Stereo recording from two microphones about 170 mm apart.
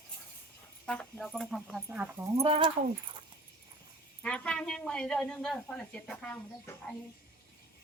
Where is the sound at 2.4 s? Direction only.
30° right (ahead or behind).